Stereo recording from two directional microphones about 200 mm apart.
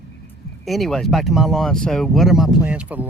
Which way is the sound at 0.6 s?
Centre (ahead or behind).